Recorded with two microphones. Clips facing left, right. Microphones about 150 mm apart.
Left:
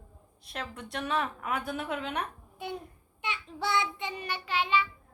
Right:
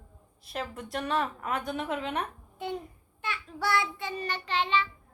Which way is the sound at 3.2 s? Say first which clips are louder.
Right 1 dB; 20° left (ahead or behind).